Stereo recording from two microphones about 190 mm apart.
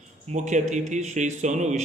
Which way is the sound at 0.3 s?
40° right (ahead or behind).